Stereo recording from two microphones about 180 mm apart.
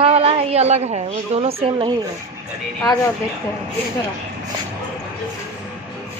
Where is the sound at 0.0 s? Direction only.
35° right (ahead or behind).